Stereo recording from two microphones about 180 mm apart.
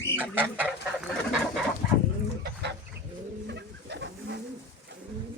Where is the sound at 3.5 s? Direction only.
70° right (ahead or behind).